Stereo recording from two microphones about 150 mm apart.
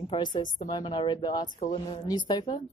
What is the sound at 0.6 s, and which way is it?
A woman's voice, 30° left (ahead or behind).